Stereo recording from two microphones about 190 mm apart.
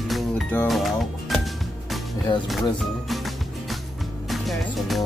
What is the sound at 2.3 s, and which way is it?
Speech, 25° left (ahead or behind).